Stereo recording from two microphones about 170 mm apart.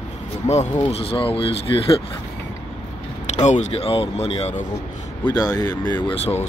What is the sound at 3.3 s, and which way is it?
Speech, 45° left (ahead or behind).